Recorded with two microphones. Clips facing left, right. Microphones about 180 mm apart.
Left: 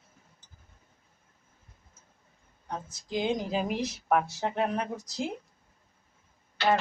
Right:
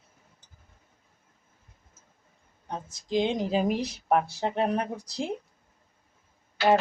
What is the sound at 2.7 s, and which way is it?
Speech, 25° right (ahead or behind).